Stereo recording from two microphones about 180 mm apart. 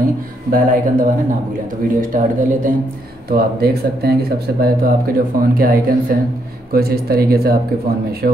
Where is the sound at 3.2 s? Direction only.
60° right (ahead or behind).